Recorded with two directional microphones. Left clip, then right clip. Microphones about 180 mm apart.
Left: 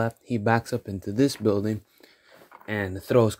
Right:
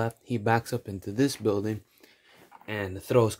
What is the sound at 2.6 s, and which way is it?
Speech, 25° left (ahead or behind).